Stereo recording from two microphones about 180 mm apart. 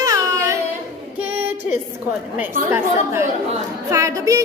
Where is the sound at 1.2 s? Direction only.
10° right (ahead or behind).